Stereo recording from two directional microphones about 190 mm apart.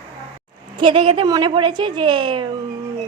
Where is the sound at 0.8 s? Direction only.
25° right (ahead or behind).